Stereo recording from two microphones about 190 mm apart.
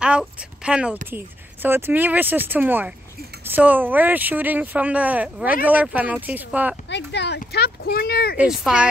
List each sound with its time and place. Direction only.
0.0 s speech: 5° right (ahead or behind)
6.9 s speech: 65° left (ahead or behind)
8.4 s speech: 5° right (ahead or behind)